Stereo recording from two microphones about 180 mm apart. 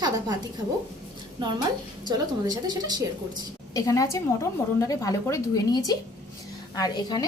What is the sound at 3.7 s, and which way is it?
A woman's voice, 20° left (ahead or behind).